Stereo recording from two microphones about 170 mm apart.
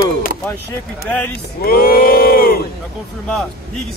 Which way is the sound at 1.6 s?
60° left (ahead or behind).